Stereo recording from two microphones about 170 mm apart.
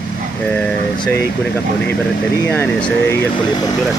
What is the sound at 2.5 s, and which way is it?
Speech, 5° left (ahead or behind).